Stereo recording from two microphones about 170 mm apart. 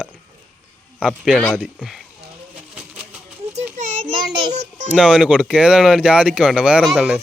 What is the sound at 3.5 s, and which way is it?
Children playing, 45° right (ahead or behind).